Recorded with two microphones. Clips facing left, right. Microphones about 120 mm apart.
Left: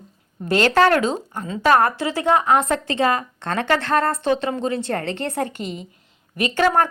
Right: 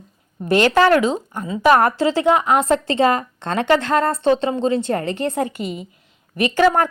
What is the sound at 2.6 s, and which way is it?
A woman's voice, 30° right (ahead or behind).